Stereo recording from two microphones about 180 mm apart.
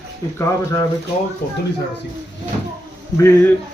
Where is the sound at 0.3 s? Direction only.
20° left (ahead or behind).